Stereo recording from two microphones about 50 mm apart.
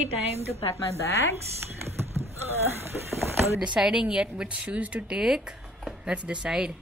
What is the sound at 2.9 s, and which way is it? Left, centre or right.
Speech, centre.